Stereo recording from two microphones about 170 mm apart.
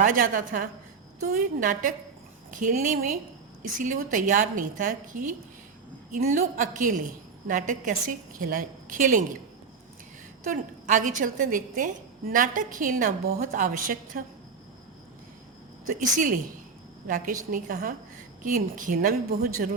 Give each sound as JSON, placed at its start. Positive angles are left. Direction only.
{"t": 0.0, "sound": "a woman's voice", "side_deg": -50}
{"t": 10.4, "sound": "a woman's voice", "side_deg": -50}
{"t": 16.0, "sound": "a woman's voice", "side_deg": -50}
{"t": 17.5, "sound": "a woman's voice", "side_deg": -55}